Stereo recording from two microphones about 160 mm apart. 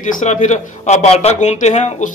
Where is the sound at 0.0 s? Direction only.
50° left (ahead or behind).